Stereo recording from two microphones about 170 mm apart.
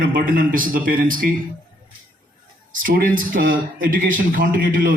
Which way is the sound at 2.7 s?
55° right (ahead or behind).